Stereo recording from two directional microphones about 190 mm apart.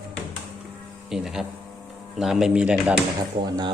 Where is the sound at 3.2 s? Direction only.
20° right (ahead or behind).